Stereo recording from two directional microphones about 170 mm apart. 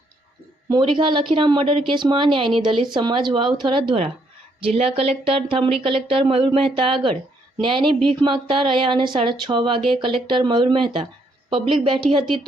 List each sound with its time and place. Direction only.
0.7 s speech: 30° right (ahead or behind)
7.9 s speech: 5° left (ahead or behind)
8.2 s speech: 30° right (ahead or behind)